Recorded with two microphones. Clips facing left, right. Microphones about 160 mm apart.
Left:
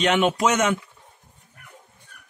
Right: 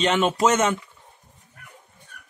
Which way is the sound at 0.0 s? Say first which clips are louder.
Even; centre (ahead or behind).